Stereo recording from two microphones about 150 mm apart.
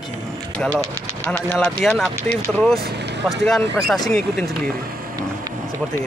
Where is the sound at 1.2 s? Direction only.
10° left (ahead or behind).